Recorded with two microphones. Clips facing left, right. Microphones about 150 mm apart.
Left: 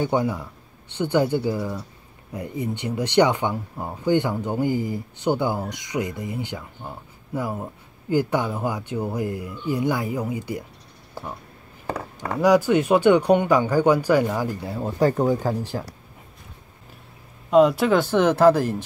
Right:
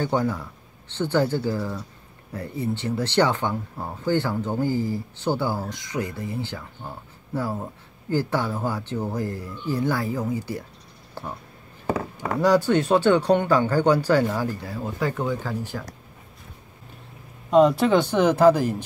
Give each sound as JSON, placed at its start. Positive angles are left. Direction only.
{"t": 0.0, "sound": "speech", "side_deg": 15}
{"t": 12.3, "sound": "speech", "side_deg": 10}
{"t": 15.0, "sound": "speech", "side_deg": 40}
{"t": 17.5, "sound": "speech", "side_deg": 0}